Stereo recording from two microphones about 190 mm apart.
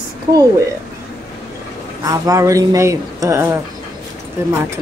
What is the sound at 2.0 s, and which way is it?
A woman's voice, 20° right (ahead or behind).